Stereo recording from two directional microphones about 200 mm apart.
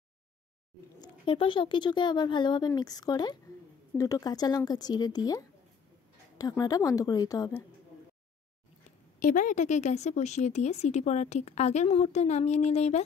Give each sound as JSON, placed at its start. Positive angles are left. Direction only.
{"t": 1.0, "sound": "a woman's voice", "side_deg": 25}
{"t": 9.2, "sound": "speech", "side_deg": 40}